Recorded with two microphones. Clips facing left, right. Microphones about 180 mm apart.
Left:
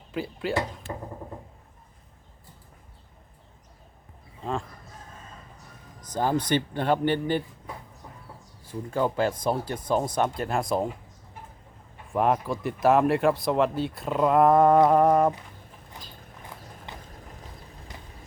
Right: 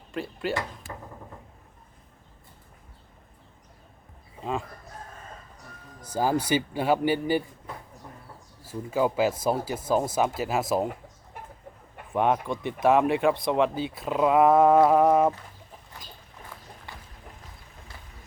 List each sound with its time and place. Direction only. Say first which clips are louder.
0.1 s speech: even; centre (ahead or behind)
0.9 s a sound: left 5 dB; 25° left (ahead or behind)
6.0 s speech: even; 10° right (ahead or behind)
8.6 s speech: right 1 dB; 5° right (ahead or behind)
12.1 s speech: even; centre (ahead or behind)
15.9 s rodents: left 2 dB; 20° left (ahead or behind)
16.9 s a sound: left 3 dB; 20° left (ahead or behind)